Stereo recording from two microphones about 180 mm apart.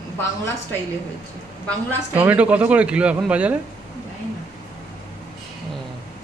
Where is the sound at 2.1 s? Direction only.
10° right (ahead or behind).